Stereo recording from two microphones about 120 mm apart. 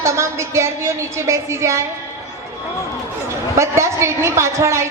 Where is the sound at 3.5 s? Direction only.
25° right (ahead or behind).